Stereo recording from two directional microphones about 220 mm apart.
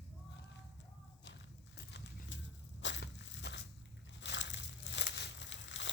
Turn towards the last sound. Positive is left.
turn(degrees=55)  # may be behind; listen again after turning